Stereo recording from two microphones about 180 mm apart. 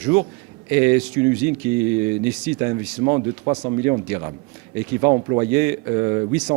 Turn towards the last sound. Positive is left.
turn(degrees=-20)  # may be behind; listen again after turning